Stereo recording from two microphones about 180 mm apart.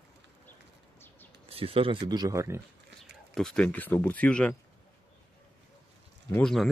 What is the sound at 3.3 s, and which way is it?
Speech, 5° left (ahead or behind).